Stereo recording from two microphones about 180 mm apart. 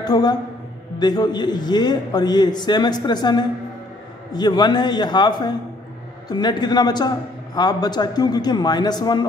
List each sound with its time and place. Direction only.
0.0 s a man's voice: 25° left (ahead or behind)